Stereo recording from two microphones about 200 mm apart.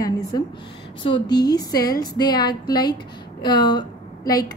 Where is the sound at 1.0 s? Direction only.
20° left (ahead or behind).